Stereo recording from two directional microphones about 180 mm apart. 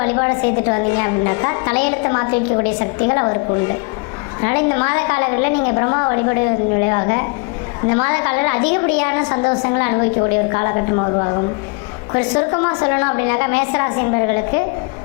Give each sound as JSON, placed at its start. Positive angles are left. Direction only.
{"t": 0.0, "sound": "a woman's voice", "side_deg": 20}